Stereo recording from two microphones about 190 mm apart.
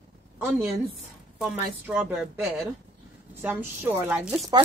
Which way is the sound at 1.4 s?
5° right (ahead or behind).